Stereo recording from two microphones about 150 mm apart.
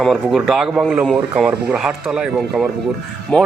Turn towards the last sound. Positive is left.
turn(degrees=5)  # may be behind; listen again after turning